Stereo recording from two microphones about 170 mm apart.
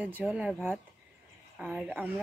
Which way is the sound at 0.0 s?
10° right (ahead or behind).